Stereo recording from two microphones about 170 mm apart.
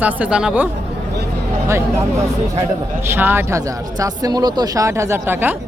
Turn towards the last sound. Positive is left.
turn(degrees=-15)  # may be behind; listen again after turning